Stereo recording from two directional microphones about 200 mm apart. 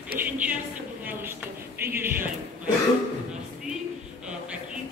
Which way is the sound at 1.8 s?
10° right (ahead or behind).